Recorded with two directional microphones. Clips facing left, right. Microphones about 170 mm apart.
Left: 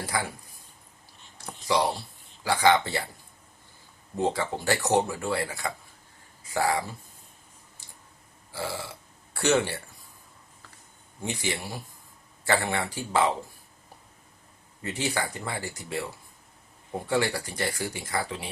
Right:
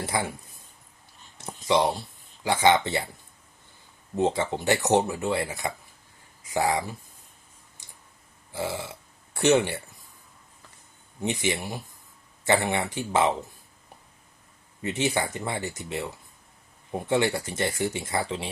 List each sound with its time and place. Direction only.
0.0 s speech: 25° right (ahead or behind)
1.4 s a sound: 20° right (ahead or behind)
2.4 s speech: 20° right (ahead or behind)
4.2 s speech: 20° right (ahead or behind)
7.8 s tick-tock: 15° right (ahead or behind)
8.5 s speech: 20° right (ahead or behind)
11.2 s speech: 20° right (ahead or behind)
14.8 s speech: 20° right (ahead or behind)
17.1 s speech: 20° right (ahead or behind)